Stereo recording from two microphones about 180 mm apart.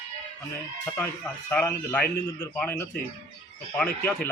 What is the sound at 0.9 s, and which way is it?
A woman's voice, 10° left (ahead or behind).